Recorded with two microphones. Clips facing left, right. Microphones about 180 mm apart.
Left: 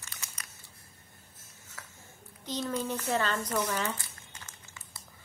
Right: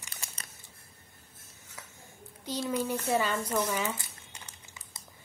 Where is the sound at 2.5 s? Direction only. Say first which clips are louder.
Right 2 dB; 10° right (ahead or behind).